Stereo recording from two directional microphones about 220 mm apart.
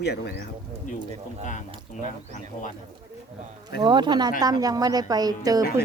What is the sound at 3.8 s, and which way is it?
A woman's voice, 20° right (ahead or behind).